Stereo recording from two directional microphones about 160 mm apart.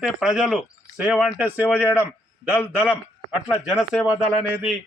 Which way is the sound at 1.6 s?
10° left (ahead or behind).